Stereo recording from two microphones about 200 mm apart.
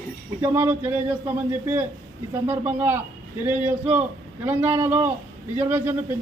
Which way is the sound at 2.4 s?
10° right (ahead or behind).